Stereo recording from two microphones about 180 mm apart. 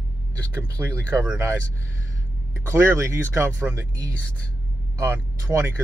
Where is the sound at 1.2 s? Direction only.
10° right (ahead or behind).